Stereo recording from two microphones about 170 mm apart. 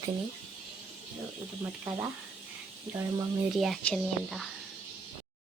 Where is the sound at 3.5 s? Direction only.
Centre (ahead or behind).